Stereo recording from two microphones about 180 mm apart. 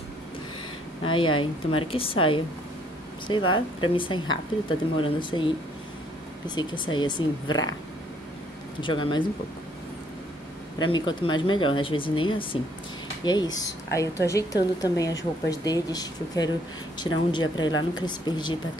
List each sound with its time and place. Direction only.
1.0 s speech: 30° left (ahead or behind)
8.8 s speech: 25° left (ahead or behind)
10.8 s speech: 25° left (ahead or behind)